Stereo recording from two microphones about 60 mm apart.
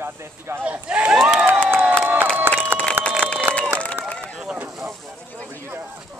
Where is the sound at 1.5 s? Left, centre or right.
Right.